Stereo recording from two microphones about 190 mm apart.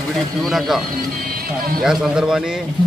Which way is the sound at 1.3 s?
50° right (ahead or behind).